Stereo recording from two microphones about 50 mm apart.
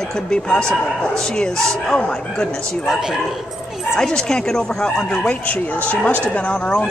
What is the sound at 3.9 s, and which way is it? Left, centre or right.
Speech, centre.